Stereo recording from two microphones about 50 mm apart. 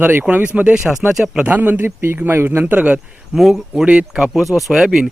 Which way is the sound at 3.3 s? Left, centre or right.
Centre.